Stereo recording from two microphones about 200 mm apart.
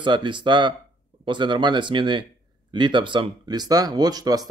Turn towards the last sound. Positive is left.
turn(degrees=-20)  # may be behind; listen again after turning